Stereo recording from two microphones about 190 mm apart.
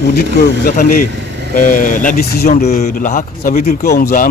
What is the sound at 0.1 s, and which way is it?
Speech, 55° left (ahead or behind).